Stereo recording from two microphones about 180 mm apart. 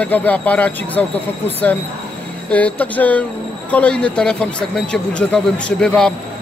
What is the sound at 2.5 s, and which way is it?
Speech, 10° left (ahead or behind).